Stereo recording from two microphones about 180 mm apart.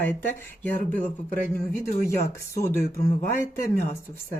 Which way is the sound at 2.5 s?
15° left (ahead or behind).